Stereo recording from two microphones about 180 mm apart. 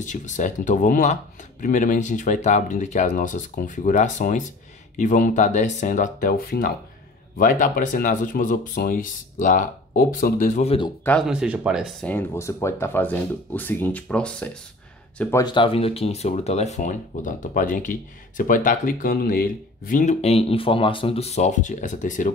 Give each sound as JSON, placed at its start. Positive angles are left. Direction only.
{"t": 0.0, "sound": "speech", "side_deg": 45}
{"t": 11.1, "sound": "speech", "side_deg": 0}
{"t": 12.1, "sound": "speech", "side_deg": 15}
{"t": 15.4, "sound": "speech", "side_deg": 30}